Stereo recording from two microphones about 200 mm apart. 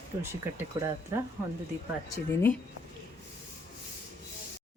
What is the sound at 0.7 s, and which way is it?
Speech, 15° right (ahead or behind).